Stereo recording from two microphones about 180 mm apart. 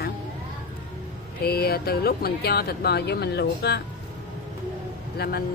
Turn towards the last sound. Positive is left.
turn(degrees=60)  # may be behind; listen again after turning